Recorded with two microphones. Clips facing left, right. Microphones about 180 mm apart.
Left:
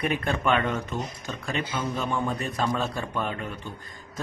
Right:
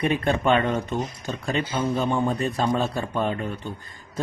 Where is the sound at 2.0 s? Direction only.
30° right (ahead or behind).